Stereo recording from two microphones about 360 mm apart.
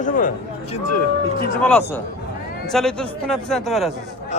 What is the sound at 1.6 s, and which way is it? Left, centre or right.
A man's voice, centre.